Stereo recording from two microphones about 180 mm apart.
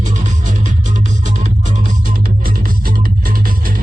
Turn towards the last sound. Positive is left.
turn(degrees=-50)  # may be behind; listen again after turning